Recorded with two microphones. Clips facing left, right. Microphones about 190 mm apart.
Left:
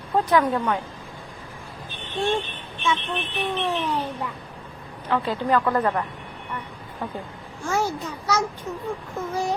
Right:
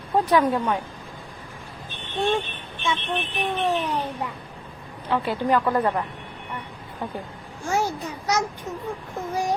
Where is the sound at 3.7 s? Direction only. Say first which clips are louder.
Even; 40° right (ahead or behind).